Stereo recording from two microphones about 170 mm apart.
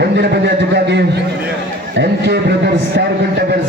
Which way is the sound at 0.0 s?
75° right (ahead or behind).